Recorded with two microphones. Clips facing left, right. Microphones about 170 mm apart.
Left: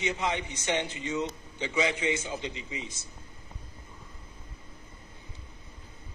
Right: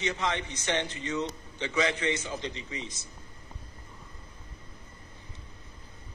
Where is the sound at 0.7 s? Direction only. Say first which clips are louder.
Left 1 dB; 10° left (ahead or behind).